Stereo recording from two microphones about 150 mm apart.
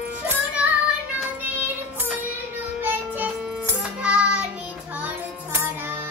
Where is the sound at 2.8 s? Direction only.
10° right (ahead or behind).